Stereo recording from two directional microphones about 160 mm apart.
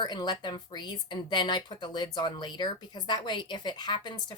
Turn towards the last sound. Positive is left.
turn(degrees=25)  # may be behind; listen again after turning